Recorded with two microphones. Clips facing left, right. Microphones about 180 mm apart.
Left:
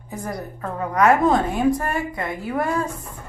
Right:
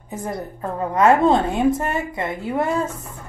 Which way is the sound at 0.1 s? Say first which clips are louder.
Right 2 dB; 25° right (ahead or behind).